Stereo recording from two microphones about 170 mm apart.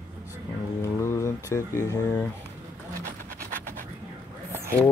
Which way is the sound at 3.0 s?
55° right (ahead or behind).